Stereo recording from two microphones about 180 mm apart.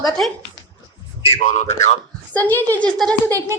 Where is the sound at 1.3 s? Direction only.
40° left (ahead or behind).